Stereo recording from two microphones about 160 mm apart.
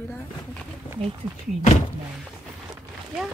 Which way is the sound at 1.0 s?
35° right (ahead or behind).